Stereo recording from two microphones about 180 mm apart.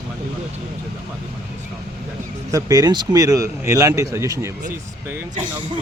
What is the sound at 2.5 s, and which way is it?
Speech, 20° right (ahead or behind).